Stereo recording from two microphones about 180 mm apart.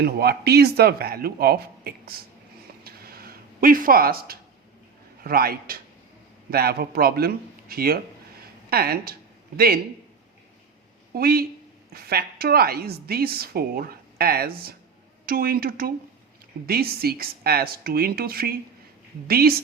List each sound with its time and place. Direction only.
0.0 s a woman's voice: 60° right (ahead or behind)
2.8 s a sound: 55° right (ahead or behind)
5.2 s a woman's voice: 55° right (ahead or behind)
11.1 s a woman's voice: 55° right (ahead or behind)